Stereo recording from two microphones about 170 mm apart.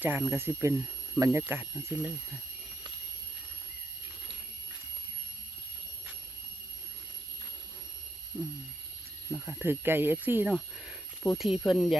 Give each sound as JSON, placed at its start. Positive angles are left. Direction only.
{"t": 0.0, "sound": "speech", "side_deg": -15}
{"t": 8.3, "sound": "speech", "side_deg": -10}